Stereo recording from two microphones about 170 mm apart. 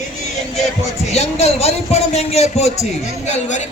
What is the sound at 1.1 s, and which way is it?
A man's voice, 40° left (ahead or behind).